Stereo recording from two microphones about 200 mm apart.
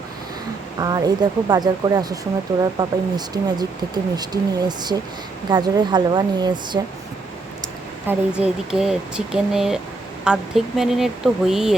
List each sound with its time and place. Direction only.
0.8 s speech: 20° right (ahead or behind)
5.5 s speech: 20° right (ahead or behind)
8.0 s speech: 5° right (ahead or behind)